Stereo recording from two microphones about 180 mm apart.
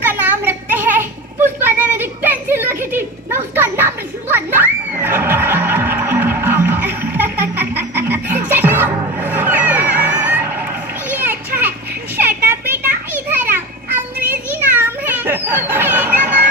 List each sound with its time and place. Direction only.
0.0 s child singing: 10° right (ahead or behind)
11.1 s children playing: 10° right (ahead or behind)